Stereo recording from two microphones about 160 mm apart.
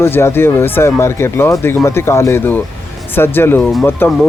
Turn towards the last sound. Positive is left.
turn(degrees=15)  # may be behind; listen again after turning